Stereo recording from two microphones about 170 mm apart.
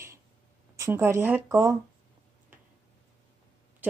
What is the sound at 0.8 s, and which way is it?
Speech, 15° right (ahead or behind).